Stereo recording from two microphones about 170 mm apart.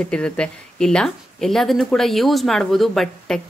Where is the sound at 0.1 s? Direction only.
5° left (ahead or behind).